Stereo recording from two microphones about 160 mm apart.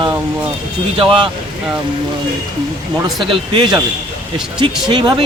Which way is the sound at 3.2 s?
35° right (ahead or behind).